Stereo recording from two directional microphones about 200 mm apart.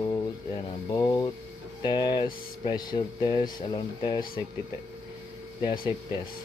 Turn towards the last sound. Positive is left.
turn(degrees=20)  # may be behind; listen again after turning